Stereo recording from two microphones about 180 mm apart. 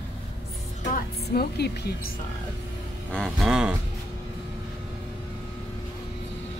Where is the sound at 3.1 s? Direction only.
Centre (ahead or behind).